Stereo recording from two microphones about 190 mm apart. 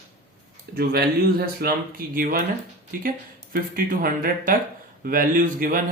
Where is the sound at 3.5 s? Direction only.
50° right (ahead or behind).